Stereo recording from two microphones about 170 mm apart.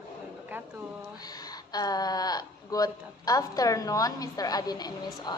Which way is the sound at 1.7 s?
25° left (ahead or behind).